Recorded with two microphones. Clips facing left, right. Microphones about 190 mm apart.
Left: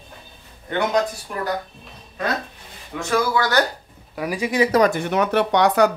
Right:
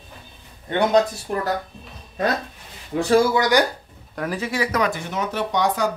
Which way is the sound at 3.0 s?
35° right (ahead or behind).